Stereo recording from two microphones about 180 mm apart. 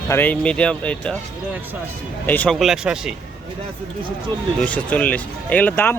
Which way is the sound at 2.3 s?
5° left (ahead or behind).